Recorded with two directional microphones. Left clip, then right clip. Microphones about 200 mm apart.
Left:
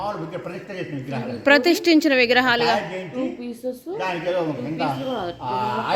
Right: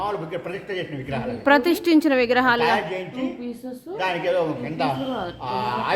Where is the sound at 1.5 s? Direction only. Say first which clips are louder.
Left 2 dB; 10° right (ahead or behind).